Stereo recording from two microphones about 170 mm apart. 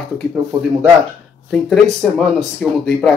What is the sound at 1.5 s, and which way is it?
Speech, 5° left (ahead or behind).